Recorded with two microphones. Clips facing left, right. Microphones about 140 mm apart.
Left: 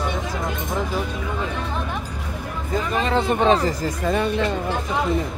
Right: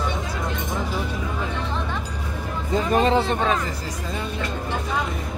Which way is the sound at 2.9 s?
35° right (ahead or behind).